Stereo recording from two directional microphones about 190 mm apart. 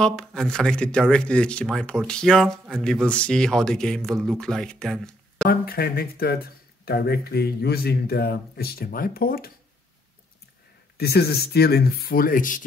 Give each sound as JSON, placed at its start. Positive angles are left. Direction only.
{"t": 0.0, "sound": "speech", "side_deg": 5}
{"t": 5.5, "sound": "a man's voice", "side_deg": 50}
{"t": 11.0, "sound": "a man's voice", "side_deg": 55}